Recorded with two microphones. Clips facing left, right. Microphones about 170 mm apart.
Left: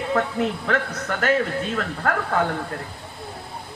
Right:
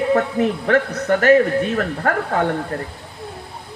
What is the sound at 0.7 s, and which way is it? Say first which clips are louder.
Speech: right 8 dB; 65° right (ahead or behind).